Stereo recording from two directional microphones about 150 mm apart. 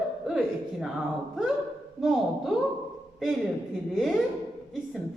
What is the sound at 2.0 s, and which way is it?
Speech, 5° right (ahead or behind).